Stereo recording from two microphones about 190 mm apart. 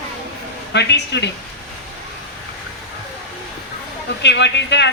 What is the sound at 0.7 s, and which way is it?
Speech, 65° left (ahead or behind).